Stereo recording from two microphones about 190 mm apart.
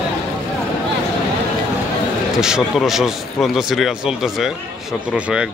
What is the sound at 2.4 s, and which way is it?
Speech, centre (ahead or behind).